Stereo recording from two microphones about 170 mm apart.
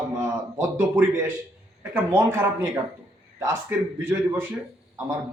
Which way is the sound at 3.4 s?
15° right (ahead or behind).